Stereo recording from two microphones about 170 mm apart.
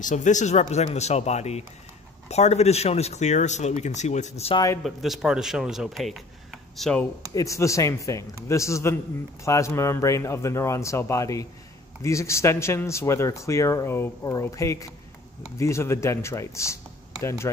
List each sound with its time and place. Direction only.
0.0 s speech: 45° left (ahead or behind)
4.8 s speech: centre (ahead or behind)
7.3 s speech: 20° left (ahead or behind)